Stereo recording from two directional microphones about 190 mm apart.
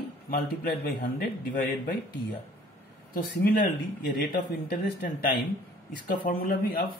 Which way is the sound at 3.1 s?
55° left (ahead or behind).